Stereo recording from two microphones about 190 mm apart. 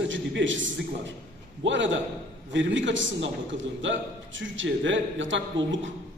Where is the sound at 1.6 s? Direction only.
75° right (ahead or behind).